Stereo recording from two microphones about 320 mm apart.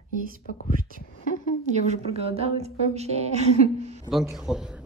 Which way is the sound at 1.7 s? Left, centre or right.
Centre.